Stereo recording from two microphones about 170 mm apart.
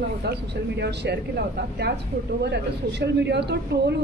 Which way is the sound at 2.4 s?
80° right.